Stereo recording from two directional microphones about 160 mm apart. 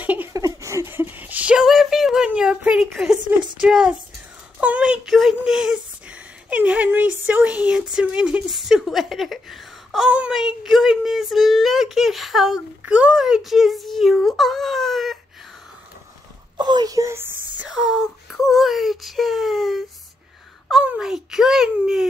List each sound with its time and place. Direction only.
0.0 s a sound: 10° right (ahead or behind)
3.6 s speech: 5° right (ahead or behind)
16.5 s speech: 25° right (ahead or behind)
17.6 s speech: centre (ahead or behind)
20.8 s speech: 5° right (ahead or behind)